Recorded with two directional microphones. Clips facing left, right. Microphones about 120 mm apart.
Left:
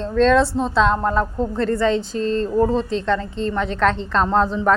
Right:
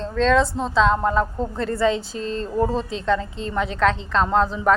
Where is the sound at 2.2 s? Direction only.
40° left (ahead or behind).